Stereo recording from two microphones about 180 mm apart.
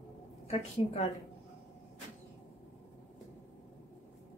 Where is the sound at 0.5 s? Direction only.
35° left (ahead or behind).